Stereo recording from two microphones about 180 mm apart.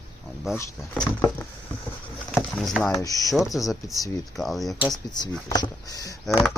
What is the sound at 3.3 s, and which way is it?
Speech, centre (ahead or behind).